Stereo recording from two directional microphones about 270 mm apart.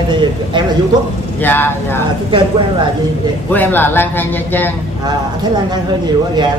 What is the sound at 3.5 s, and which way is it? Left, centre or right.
Speech, centre.